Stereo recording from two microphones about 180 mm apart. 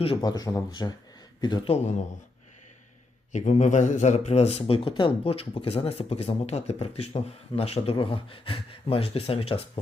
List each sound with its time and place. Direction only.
0.0 s a man's voice: 30° left (ahead or behind)
0.3 s a man's voice: 20° left (ahead or behind); by 2.0 s 40° left (ahead or behind)
3.3 s a man's voice: 40° left (ahead or behind)